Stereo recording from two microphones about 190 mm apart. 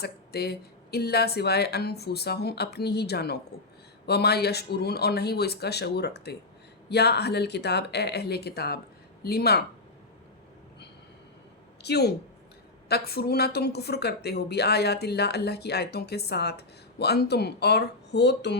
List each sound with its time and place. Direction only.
0.0 s a woman's voice: 55° left (ahead or behind)
11.8 s a woman's voice: 60° left (ahead or behind)